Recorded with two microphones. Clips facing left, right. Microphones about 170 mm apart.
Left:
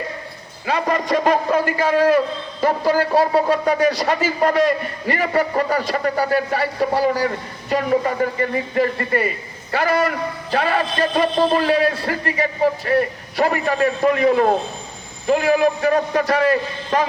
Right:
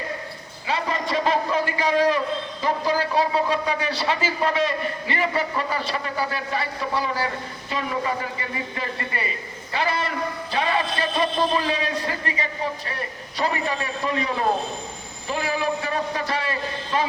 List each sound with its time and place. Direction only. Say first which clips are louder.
0.7 s a man's voice: left 6 dB; 45° left (ahead or behind)